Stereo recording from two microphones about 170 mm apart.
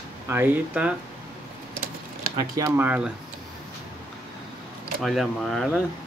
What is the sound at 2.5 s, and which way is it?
Speech, 15° right (ahead or behind).